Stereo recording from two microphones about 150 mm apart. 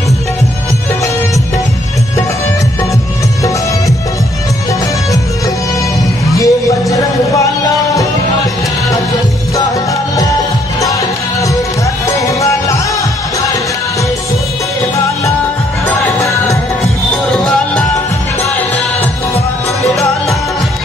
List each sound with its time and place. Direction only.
6.3 s music: 20° left (ahead or behind)
12.2 s music: 20° left (ahead or behind)
15.9 s music: 20° left (ahead or behind)